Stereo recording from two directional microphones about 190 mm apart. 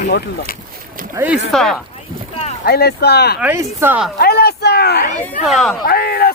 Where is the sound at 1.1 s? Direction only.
10° right (ahead or behind).